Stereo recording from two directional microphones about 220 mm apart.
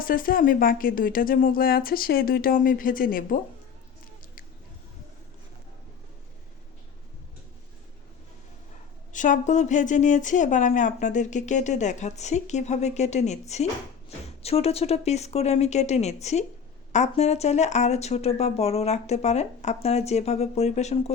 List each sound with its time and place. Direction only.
0.0 s speech: 40° left (ahead or behind)
9.1 s speech: 35° left (ahead or behind)